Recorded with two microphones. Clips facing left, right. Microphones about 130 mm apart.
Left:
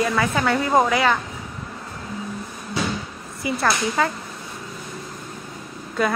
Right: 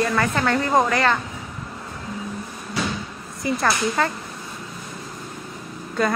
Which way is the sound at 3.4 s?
5° left (ahead or behind).